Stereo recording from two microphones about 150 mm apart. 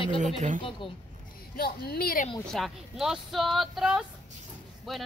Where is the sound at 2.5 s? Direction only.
Centre (ahead or behind).